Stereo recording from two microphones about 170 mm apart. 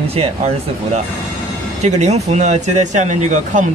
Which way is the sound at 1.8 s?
40° right (ahead or behind).